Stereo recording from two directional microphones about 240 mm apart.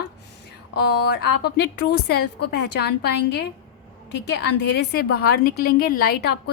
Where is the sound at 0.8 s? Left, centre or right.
Left.